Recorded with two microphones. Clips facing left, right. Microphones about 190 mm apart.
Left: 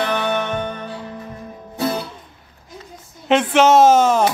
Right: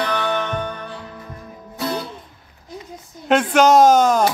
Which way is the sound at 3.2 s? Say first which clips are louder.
Even; 5° left (ahead or behind).